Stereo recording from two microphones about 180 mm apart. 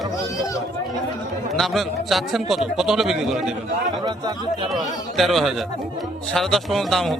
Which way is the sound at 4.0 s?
25° right (ahead or behind).